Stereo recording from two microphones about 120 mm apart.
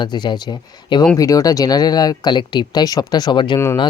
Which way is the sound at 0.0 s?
40° left (ahead or behind).